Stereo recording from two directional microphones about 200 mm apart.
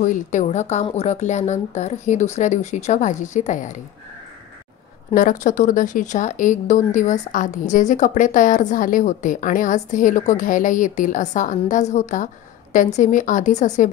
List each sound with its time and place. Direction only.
0.0 s speech: 35° left (ahead or behind)
5.1 s speech: 40° left (ahead or behind)